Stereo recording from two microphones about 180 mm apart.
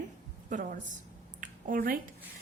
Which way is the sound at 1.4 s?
50° right (ahead or behind).